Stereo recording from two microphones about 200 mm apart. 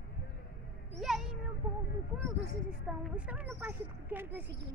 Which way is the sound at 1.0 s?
Centre (ahead or behind).